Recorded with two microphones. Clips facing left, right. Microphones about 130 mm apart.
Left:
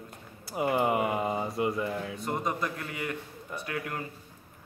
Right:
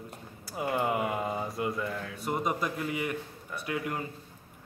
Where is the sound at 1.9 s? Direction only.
20° left (ahead or behind).